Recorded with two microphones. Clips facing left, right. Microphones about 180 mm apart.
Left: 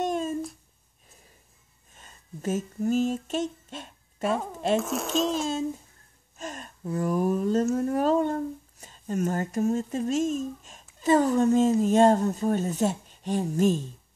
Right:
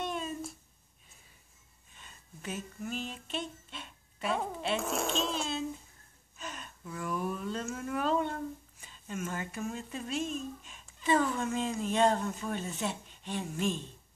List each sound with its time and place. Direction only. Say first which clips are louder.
0.0 s a sound: left 8 dB; 45° left (ahead or behind)
2.0 s female singing: left 9 dB; 45° left (ahead or behind)
4.7 s a child's voice: left 6 dB; centre (ahead or behind)
6.3 s speech: left 6 dB; 45° left (ahead or behind)